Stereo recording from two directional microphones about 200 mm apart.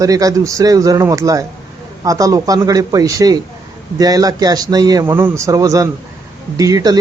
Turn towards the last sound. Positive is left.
turn(degrees=-20)  # may be behind; listen again after turning